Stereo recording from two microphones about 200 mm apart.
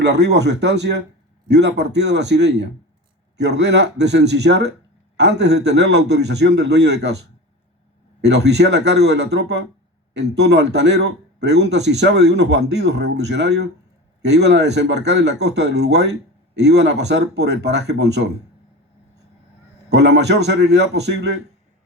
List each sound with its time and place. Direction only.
0.0 s a man's voice: 60° right (ahead or behind)
8.2 s a man's voice: 55° right (ahead or behind)
19.9 s a man's voice: 60° right (ahead or behind)